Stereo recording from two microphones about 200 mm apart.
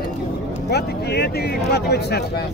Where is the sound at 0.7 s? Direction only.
55° left (ahead or behind).